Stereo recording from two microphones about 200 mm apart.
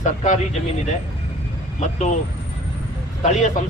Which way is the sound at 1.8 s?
35° left (ahead or behind).